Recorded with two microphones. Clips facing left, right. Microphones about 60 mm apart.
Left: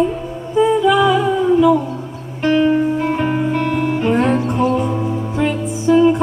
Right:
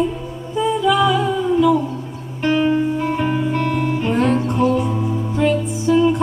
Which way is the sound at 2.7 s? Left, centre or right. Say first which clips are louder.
Left 2 dB; left.